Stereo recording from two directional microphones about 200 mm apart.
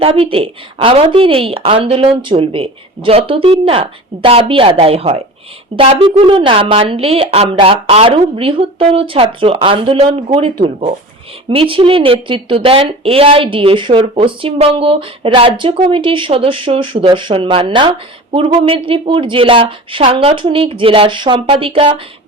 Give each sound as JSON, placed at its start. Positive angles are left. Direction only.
{"t": 0.0, "sound": "speech", "side_deg": -25}